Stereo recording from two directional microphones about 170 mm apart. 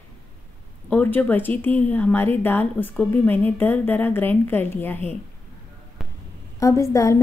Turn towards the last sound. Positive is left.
turn(degrees=20)  # may be behind; listen again after turning